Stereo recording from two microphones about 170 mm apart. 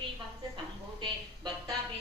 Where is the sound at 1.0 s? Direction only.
25° right (ahead or behind).